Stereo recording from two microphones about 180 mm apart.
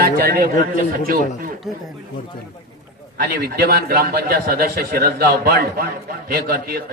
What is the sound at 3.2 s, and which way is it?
A man's voice, 60° right (ahead or behind).